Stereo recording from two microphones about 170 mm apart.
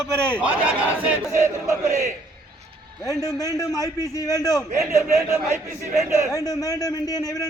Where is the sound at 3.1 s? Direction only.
20° left (ahead or behind).